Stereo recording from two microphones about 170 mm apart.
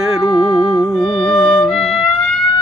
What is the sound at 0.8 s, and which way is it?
Music, centre (ahead or behind).